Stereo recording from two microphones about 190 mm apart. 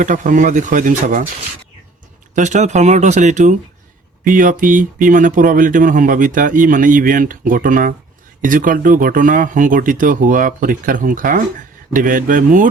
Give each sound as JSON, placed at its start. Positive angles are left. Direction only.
{"t": 0.0, "sound": "speech", "side_deg": -40}
{"t": 2.3, "sound": "speech", "side_deg": -40}